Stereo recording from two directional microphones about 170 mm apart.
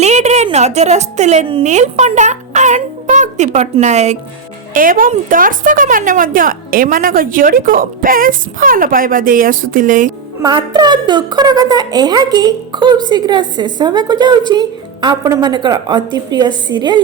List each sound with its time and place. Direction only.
0.0 s a woman's voice: 40° right (ahead or behind)
4.7 s a woman's voice: 55° right (ahead or behind)
10.4 s a woman's voice: 25° right (ahead or behind)